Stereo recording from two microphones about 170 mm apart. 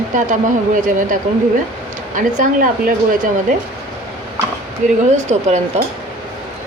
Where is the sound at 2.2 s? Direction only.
50° right (ahead or behind).